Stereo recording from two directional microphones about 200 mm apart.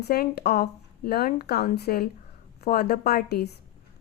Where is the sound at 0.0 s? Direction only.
50° left (ahead or behind).